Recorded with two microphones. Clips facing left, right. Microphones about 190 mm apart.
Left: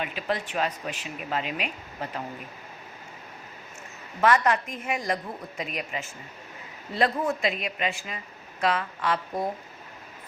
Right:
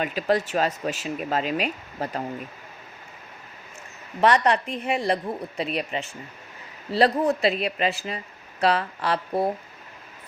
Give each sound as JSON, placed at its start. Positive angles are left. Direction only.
{"t": 0.0, "sound": "speech", "side_deg": -40}
{"t": 4.2, "sound": "speech", "side_deg": -30}